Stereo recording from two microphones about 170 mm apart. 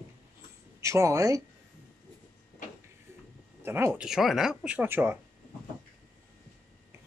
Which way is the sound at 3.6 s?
15° right (ahead or behind).